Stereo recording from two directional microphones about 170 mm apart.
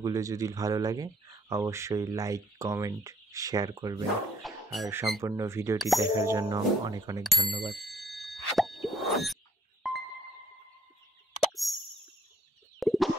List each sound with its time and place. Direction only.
0.0 s speech: 20° right (ahead or behind)
4.4 s a sound: centre (ahead or behind)
4.8 s speech: 15° right (ahead or behind)
7.2 s bicycle bell: centre (ahead or behind)
9.8 s music: centre (ahead or behind)
11.6 s plop: centre (ahead or behind)
12.7 s a sound: centre (ahead or behind)